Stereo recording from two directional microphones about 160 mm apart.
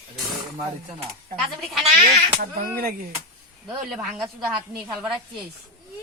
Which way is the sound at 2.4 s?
65° right (ahead or behind).